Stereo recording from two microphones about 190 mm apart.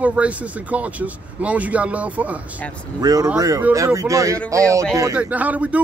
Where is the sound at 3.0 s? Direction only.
20° right (ahead or behind).